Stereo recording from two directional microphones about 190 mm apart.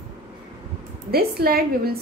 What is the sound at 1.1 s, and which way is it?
Speech, 55° right (ahead or behind).